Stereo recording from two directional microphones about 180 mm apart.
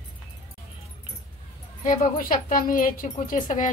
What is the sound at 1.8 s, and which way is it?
Speech, 50° left (ahead or behind).